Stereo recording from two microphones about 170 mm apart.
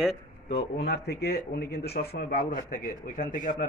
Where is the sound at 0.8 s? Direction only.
70° left (ahead or behind); by 3.7 s 55° left (ahead or behind).